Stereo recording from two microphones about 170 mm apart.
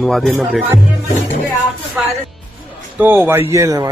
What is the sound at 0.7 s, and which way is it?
Speech, 15° right (ahead or behind).